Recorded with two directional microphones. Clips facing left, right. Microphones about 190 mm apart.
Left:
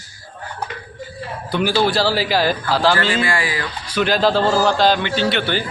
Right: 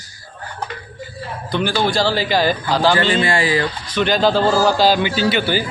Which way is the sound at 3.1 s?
25° right (ahead or behind).